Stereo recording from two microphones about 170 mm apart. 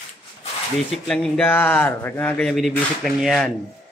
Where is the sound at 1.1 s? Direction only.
5° left (ahead or behind).